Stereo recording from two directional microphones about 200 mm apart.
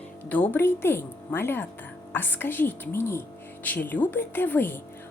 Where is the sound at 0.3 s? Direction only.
10° left (ahead or behind).